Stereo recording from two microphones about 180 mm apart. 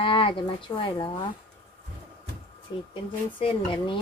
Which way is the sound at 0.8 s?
25° left (ahead or behind).